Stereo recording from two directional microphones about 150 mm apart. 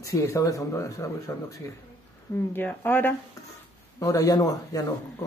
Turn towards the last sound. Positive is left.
turn(degrees=25)  # may be behind; listen again after turning